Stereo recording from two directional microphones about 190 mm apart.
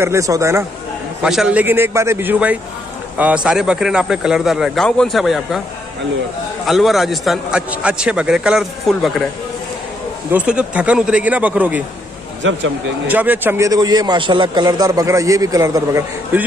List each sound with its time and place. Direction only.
0.0 s a man's voice: 15° right (ahead or behind)
1.2 s a man's voice: 5° right (ahead or behind)
6.6 s a man's voice: centre (ahead or behind)
10.3 s a man's voice: 5° right (ahead or behind)
12.4 s speech: 75° right (ahead or behind)
13.0 s a man's voice: 10° right (ahead or behind)